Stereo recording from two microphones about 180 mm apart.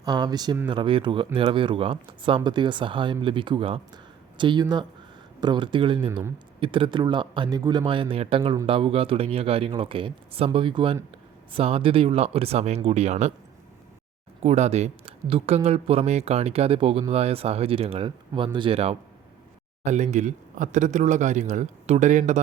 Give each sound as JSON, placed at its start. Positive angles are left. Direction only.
{"t": 0.0, "sound": "speech", "side_deg": -20}
{"t": 14.4, "sound": "speech", "side_deg": -40}